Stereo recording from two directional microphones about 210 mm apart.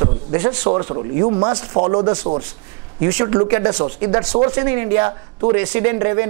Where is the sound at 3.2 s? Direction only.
20° right (ahead or behind).